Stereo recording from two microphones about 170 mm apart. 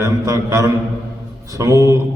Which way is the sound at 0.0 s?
20° right (ahead or behind).